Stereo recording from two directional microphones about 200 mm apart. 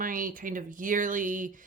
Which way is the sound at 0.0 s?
45° right (ahead or behind).